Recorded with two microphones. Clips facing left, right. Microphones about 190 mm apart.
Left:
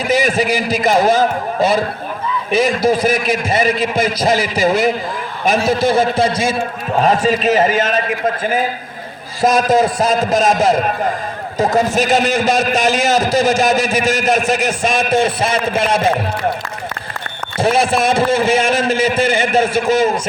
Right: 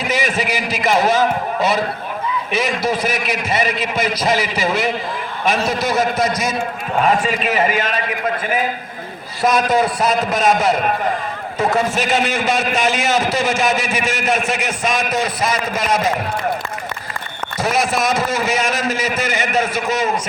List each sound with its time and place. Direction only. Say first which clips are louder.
0.1 s a man's voice: left 6 dB; 35° left (ahead or behind)
3.0 s a man's voice: left 5 dB; 50° left (ahead or behind)
5.8 s a man's voice: left 3 dB; 30° left (ahead or behind)
9.4 s a man's voice: left 3 dB; 45° left (ahead or behind); by 16.5 s 30° left (ahead or behind)
17.6 s a man's voice: left 4 dB; 30° left (ahead or behind)